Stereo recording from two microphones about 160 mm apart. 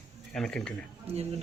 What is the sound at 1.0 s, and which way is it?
Speech, 40° right (ahead or behind).